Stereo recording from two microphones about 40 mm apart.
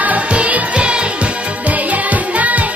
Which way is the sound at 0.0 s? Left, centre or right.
Right.